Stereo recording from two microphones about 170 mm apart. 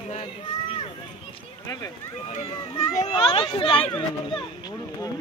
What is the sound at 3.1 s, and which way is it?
Speech, 30° left (ahead or behind).